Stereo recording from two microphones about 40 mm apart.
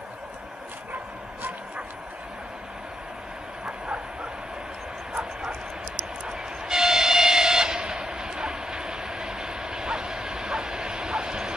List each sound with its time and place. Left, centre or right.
3.6 s vehicle: right
6.2 s train: centre